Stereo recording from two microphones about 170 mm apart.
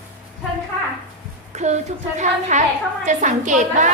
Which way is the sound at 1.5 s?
45° right (ahead or behind).